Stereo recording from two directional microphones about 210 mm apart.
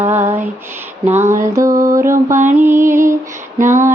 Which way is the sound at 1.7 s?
40° right (ahead or behind).